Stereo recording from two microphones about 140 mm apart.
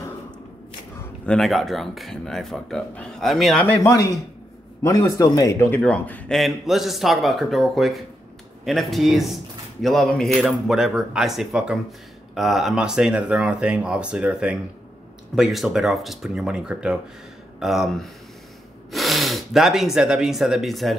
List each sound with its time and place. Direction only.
1.2 s speech: 5° left (ahead or behind)
3.6 s speech: 10° left (ahead or behind)
3.9 s speech: 25° left (ahead or behind); by 20.9 s centre (ahead or behind)